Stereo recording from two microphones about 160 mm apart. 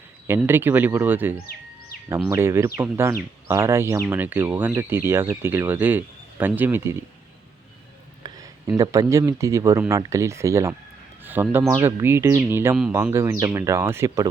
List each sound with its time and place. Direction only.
0.3 s speech: 15° right (ahead or behind)
8.2 s speech: 20° right (ahead or behind)